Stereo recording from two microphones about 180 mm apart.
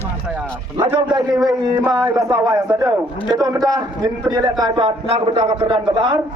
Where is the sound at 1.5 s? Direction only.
20° right (ahead or behind).